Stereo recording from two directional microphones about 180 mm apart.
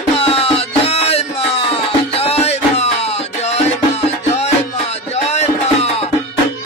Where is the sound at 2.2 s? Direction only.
35° left (ahead or behind).